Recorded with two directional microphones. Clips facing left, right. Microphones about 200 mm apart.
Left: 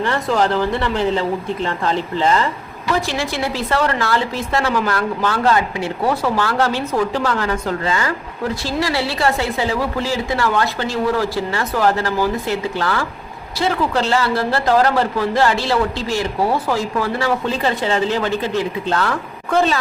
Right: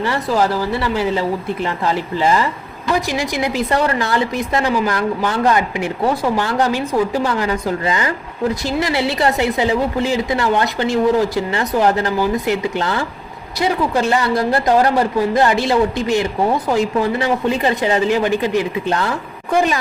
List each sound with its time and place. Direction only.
0.0 s a woman's voice: 10° right (ahead or behind)